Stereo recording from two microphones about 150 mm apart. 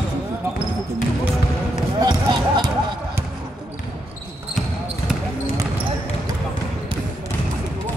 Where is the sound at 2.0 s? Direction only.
30° right (ahead or behind).